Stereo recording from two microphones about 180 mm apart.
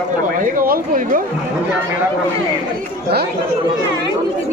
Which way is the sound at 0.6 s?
50° right (ahead or behind).